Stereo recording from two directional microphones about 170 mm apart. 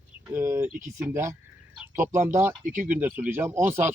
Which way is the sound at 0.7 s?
50° right (ahead or behind).